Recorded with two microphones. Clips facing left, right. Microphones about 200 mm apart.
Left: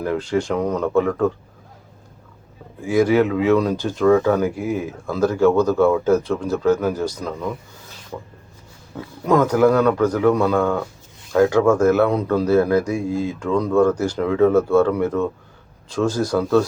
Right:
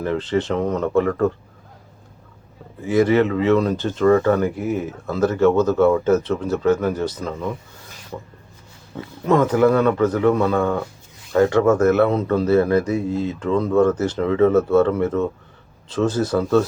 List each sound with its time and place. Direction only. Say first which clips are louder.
0.0 s speech: even; 5° left (ahead or behind)
0.4 s speech: even; centre (ahead or behind)
2.9 s speech: even; centre (ahead or behind)
9.2 s speech: even; 5° right (ahead or behind)
13.4 s speech: even; 5° right (ahead or behind)